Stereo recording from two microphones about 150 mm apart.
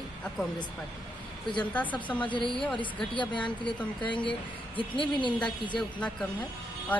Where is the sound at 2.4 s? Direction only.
35° left (ahead or behind).